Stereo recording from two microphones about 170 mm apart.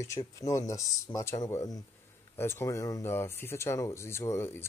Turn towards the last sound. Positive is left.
turn(degrees=15)  # may be behind; listen again after turning